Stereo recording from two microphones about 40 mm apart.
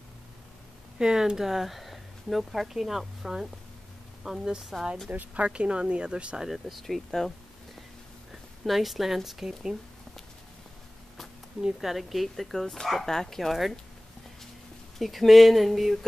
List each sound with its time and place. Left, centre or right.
0.9 s a woman's voice: centre
5.3 s speech: right
6.5 s a woman's voice: centre
8.6 s a woman's voice: centre
11.8 s a woman's voice: centre
15.0 s a woman's voice: centre